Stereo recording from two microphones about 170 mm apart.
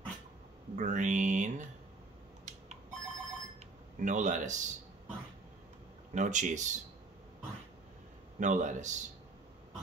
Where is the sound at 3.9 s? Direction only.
45° right (ahead or behind).